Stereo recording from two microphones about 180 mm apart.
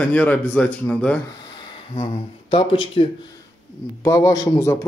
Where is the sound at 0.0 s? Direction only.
10° left (ahead or behind).